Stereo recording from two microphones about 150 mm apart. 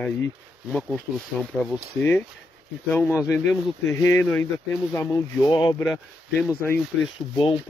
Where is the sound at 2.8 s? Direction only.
15° left (ahead or behind).